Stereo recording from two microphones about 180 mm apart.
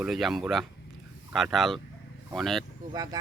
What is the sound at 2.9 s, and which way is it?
Speech, 20° right (ahead or behind).